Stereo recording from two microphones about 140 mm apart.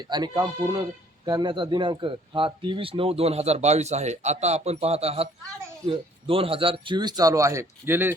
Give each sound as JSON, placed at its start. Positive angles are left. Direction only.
{"t": 0.1, "sound": "speech", "side_deg": -30}